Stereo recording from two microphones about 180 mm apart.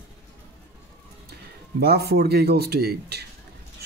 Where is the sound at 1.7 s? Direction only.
60° right (ahead or behind).